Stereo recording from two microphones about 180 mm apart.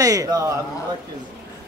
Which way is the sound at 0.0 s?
20° right (ahead or behind).